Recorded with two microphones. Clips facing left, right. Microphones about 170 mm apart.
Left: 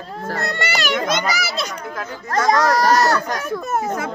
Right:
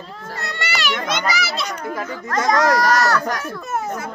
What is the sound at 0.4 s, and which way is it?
A child's voice, 45° left (ahead or behind).